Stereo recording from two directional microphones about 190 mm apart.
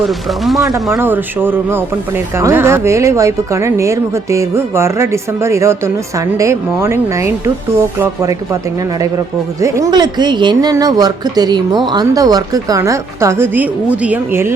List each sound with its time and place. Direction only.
0.0 s speech: centre (ahead or behind)
0.9 s speech: 10° right (ahead or behind)
9.6 s speech: 15° right (ahead or behind)